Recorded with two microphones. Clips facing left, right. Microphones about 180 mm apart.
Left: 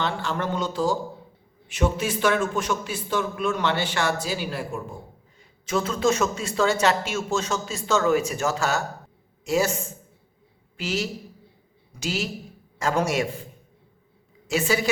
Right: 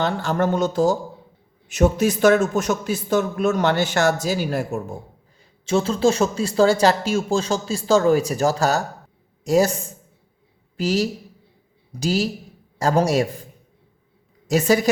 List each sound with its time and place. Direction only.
0.0 s a man's voice: 45° right (ahead or behind)
5.6 s a man's voice: 30° right (ahead or behind)
10.8 s speech: 40° right (ahead or behind)
14.4 s a woman's voice: 40° right (ahead or behind)